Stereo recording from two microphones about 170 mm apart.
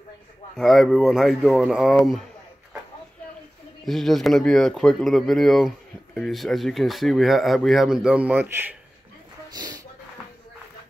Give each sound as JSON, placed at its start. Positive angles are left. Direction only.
{"t": 0.6, "sound": "speech", "side_deg": 0}
{"t": 3.8, "sound": "speech", "side_deg": 0}
{"t": 9.5, "sound": "speech", "side_deg": -25}